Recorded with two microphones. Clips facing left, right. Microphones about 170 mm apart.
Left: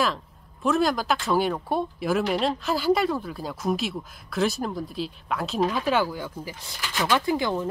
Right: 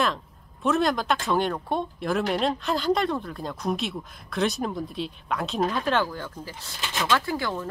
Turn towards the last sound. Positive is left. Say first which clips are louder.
# left 4 dB
turn(degrees=20)  # may be behind; listen again after turning